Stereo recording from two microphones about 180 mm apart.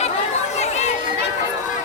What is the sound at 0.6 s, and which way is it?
Chatter, 40° left (ahead or behind).